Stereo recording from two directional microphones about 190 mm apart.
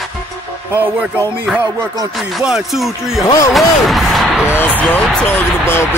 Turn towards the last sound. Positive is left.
turn(degrees=10)  # may be behind; listen again after turning